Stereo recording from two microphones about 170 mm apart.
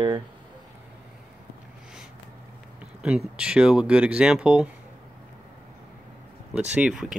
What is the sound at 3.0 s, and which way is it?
Speech, 5° right (ahead or behind).